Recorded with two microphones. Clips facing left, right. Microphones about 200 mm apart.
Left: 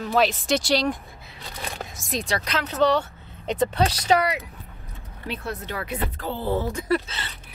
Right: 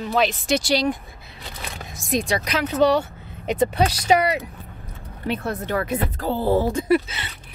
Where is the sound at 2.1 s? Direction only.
15° right (ahead or behind).